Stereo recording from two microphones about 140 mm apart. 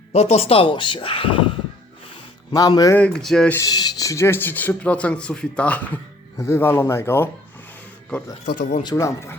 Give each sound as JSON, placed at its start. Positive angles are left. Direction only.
{"t": 0.1, "sound": "speech", "side_deg": 50}
{"t": 2.5, "sound": "speech", "side_deg": 30}
{"t": 2.9, "sound": "speech", "side_deg": 5}
{"t": 3.5, "sound": "speech", "side_deg": 25}
{"t": 8.8, "sound": "speech", "side_deg": 25}